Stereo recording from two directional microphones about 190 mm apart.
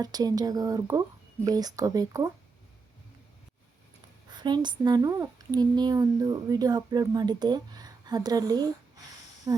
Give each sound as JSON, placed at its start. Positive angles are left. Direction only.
{"t": 0.0, "sound": "speech", "side_deg": -20}
{"t": 4.3, "sound": "speech", "side_deg": -20}